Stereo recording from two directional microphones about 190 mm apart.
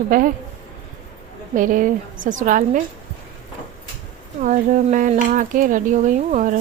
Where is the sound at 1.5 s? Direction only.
45° right (ahead or behind).